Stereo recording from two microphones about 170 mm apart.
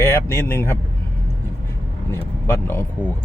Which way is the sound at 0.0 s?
15° left (ahead or behind).